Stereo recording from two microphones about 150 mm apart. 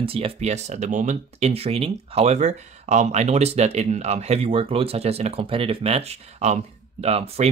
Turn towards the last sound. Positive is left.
turn(degrees=-40)  # may be behind; listen again after turning